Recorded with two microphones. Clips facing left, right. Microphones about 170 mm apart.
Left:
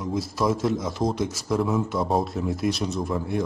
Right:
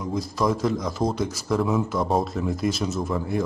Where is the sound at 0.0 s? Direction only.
5° left (ahead or behind).